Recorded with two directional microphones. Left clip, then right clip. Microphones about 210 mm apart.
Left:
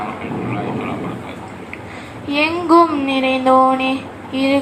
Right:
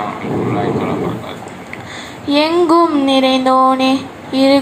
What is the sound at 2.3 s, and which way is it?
Mantra, 30° right (ahead or behind).